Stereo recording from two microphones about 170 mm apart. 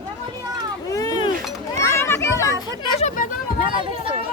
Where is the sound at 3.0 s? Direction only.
45° left (ahead or behind).